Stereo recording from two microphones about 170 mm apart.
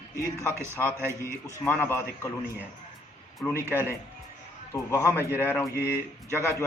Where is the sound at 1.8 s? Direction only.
15° left (ahead or behind).